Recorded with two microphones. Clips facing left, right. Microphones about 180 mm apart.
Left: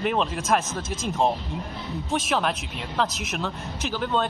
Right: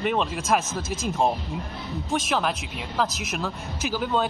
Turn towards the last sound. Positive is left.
turn(degrees=-5)  # may be behind; listen again after turning